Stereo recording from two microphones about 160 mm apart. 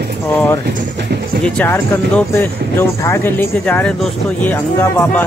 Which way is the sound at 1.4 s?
10° left (ahead or behind).